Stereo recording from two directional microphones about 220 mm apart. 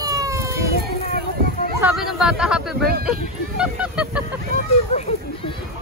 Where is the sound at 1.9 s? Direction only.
Centre (ahead or behind).